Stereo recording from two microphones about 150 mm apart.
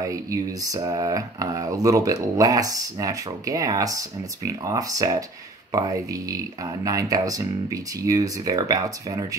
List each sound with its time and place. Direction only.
0.0 s speech: 20° right (ahead or behind)